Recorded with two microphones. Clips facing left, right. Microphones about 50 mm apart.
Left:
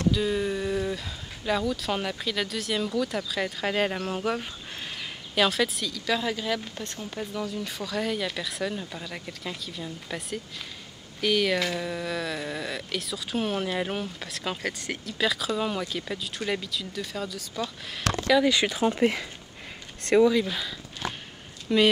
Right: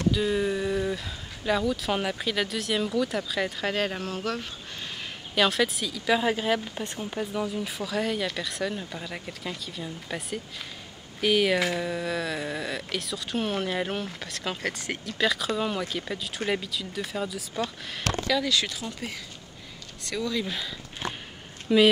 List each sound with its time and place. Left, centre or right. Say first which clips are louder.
0.1 s speech: right 1 dB; centre
5.3 s speech: even; centre
5.9 s speech: right 3 dB; centre
6.2 s speech: right 3 dB; right; by 17.5 s centre
17.9 s speech: left 4 dB; centre
18.4 s speech: left 5 dB; left
18.9 s speech: left 12 dB; left
20.4 s speech: left 1 dB; centre